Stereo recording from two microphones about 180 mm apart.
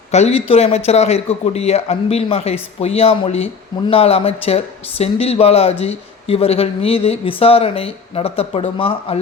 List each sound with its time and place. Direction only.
0.1 s a man's voice: 35° left (ahead or behind)